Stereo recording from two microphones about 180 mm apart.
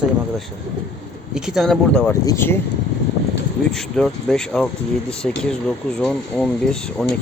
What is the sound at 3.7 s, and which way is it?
Speech, 5° left (ahead or behind).